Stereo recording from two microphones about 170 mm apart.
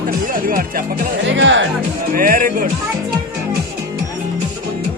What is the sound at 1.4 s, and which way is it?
Speech, 90° right.